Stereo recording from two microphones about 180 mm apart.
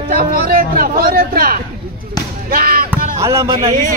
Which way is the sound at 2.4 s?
55° right (ahead or behind).